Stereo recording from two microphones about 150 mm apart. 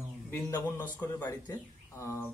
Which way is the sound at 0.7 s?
10° left (ahead or behind).